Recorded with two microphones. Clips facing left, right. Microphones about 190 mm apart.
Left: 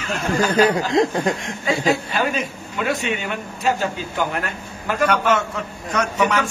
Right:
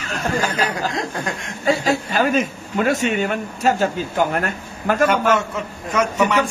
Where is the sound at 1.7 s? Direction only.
45° right (ahead or behind).